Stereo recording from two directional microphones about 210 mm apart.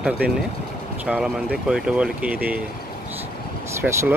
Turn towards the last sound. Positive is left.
turn(degrees=-10)  # may be behind; listen again after turning